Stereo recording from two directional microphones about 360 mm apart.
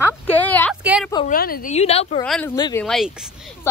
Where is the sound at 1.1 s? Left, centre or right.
Centre.